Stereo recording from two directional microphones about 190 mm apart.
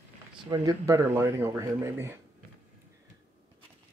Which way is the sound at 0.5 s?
20° right (ahead or behind).